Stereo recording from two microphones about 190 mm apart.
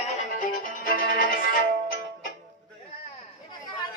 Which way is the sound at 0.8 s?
45° left (ahead or behind).